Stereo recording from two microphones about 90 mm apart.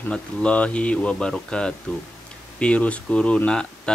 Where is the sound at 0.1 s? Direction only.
15° left (ahead or behind).